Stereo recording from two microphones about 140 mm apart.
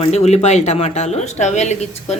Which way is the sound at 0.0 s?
50° left (ahead or behind).